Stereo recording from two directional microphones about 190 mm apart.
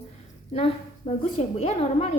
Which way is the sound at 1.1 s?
30° left (ahead or behind).